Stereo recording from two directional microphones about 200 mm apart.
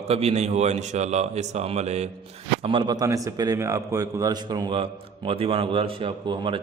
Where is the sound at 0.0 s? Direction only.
30° right (ahead or behind).